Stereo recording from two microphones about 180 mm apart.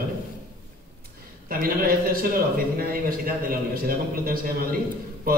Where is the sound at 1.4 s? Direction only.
55° right (ahead or behind).